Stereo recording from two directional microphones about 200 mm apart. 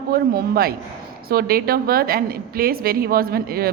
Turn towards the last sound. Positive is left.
turn(degrees=-50)  # may be behind; listen again after turning